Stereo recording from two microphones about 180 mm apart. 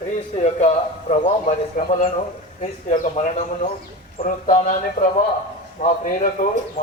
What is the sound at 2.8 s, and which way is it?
Speech, 45° left (ahead or behind).